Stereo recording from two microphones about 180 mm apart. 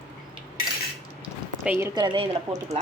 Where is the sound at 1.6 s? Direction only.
10° right (ahead or behind).